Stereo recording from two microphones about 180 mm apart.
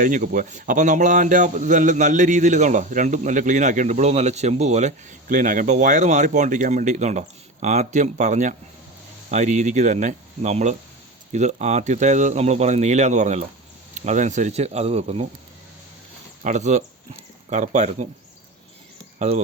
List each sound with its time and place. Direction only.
0.0 s speech: 50° right (ahead or behind)
16.4 s speech: 40° right (ahead or behind)